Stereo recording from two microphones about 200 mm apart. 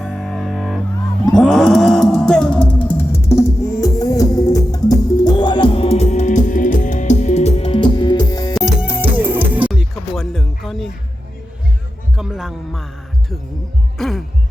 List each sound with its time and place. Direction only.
0.0 s music: centre (ahead or behind); by 8.5 s 20° left (ahead or behind)
8.5 s music: 5° right (ahead or behind)
12.1 s speech: centre (ahead or behind)
14.0 s speech: centre (ahead or behind)